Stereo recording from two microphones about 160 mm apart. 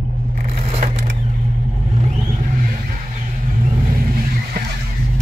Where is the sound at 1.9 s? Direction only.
40° right (ahead or behind); by 4.6 s 60° right (ahead or behind).